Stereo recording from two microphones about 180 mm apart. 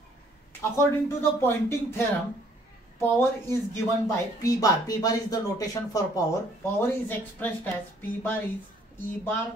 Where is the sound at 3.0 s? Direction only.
15° left (ahead or behind).